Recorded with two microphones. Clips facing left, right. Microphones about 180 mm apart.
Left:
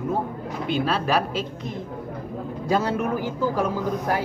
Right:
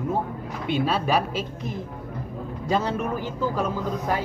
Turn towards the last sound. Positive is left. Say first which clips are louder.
# left 2 dB
turn(degrees=10)  # may be behind; listen again after turning